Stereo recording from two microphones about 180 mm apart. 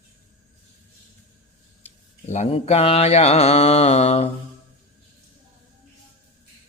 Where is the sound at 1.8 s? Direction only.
40° left (ahead or behind).